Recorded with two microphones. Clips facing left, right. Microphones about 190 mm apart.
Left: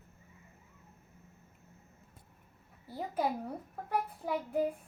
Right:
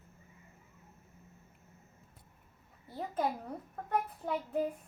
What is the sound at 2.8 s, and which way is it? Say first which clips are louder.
Speech: left 1 dB; 10° left (ahead or behind).